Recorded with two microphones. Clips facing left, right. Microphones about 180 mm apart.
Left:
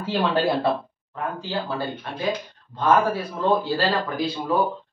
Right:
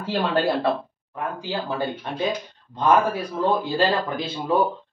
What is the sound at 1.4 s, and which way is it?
A man's voice, 15° right (ahead or behind).